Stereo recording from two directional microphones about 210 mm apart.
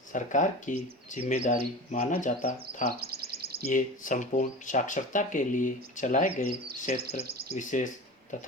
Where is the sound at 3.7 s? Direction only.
40° left (ahead or behind).